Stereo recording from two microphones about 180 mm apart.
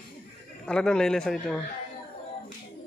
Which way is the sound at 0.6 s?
5° left (ahead or behind).